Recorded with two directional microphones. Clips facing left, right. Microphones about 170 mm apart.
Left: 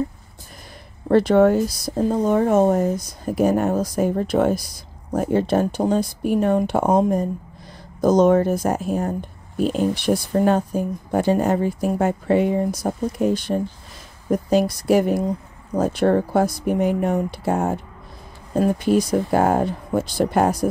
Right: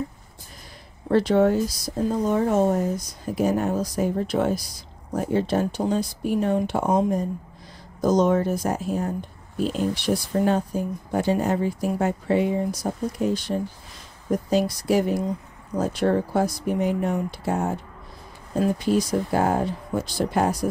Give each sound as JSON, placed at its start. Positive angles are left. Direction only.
{"t": 1.1, "sound": "speech", "side_deg": 55}